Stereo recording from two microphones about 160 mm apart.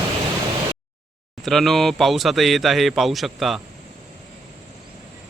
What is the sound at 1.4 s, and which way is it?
Speech, centre (ahead or behind).